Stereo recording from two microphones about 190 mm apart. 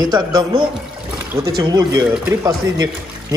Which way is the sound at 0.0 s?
20° right (ahead or behind).